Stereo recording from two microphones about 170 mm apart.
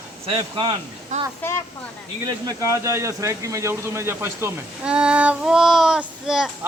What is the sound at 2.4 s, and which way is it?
Speech, 15° right (ahead or behind).